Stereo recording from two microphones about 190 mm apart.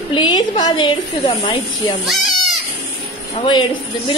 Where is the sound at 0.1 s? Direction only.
25° left (ahead or behind).